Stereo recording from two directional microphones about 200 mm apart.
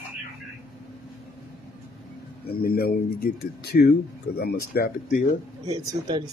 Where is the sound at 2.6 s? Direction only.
50° left (ahead or behind).